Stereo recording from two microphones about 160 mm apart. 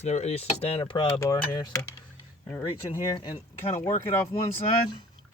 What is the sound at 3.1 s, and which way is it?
Speech, 30° left (ahead or behind).